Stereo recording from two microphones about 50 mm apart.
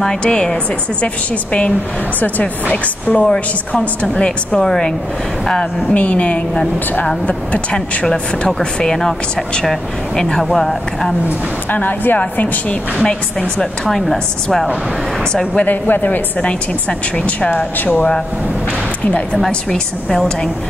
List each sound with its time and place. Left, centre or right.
0.0 s a woman's voice: centre
5.9 s a woman's voice: left; by 11.1 s centre
11.7 s a woman's voice: left
12.2 s a woman's voice: left
13.6 s speech: centre
15.5 s a woman's voice: left
19.7 s speech: centre